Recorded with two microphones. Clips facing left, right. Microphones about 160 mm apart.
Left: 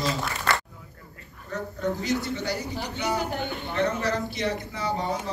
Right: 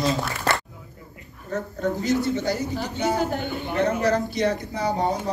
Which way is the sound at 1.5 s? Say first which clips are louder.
Right 3 dB; 45° right (ahead or behind).